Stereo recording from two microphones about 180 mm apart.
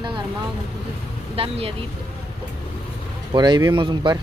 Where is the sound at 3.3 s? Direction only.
25° right (ahead or behind).